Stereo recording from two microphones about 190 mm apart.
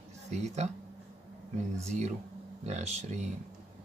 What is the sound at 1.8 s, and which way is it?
Speech, 35° right (ahead or behind).